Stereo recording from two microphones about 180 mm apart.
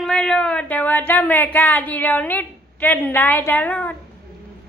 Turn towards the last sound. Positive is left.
turn(degrees=10)  # may be behind; listen again after turning